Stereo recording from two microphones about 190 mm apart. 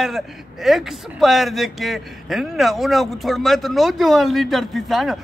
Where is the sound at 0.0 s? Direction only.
Centre (ahead or behind).